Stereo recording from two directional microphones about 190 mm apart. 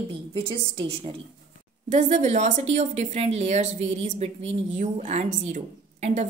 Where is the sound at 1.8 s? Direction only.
40° right (ahead or behind).